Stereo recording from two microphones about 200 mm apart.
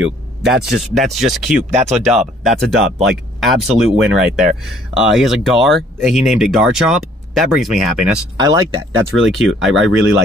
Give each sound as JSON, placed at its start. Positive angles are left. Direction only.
{"t": 0.0, "sound": "speech", "side_deg": 0}
{"t": 8.4, "sound": "speech", "side_deg": -20}
{"t": 9.1, "sound": "speech", "side_deg": 0}